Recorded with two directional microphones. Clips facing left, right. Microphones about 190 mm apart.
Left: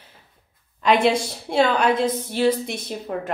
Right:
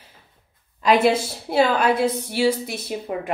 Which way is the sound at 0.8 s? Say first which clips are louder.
Right 1 dB; 5° right (ahead or behind).